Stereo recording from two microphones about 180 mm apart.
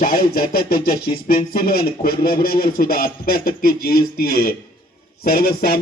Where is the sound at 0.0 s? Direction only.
55° left (ahead or behind).